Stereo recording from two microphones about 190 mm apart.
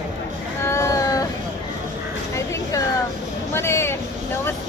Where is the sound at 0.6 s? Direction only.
15° left (ahead or behind).